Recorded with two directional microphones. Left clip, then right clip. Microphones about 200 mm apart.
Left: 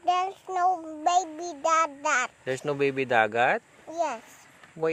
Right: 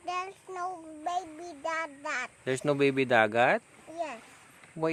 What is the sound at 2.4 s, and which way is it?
Speech, 35° right (ahead or behind).